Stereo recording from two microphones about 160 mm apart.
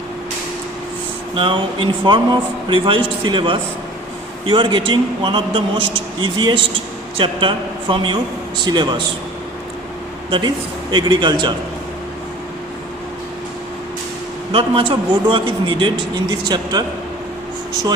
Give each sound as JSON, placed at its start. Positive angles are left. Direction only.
{"t": 1.4, "sound": "a man's voice", "side_deg": -35}
{"t": 10.9, "sound": "a man's voice", "side_deg": -30}
{"t": 14.5, "sound": "a man's voice", "side_deg": -35}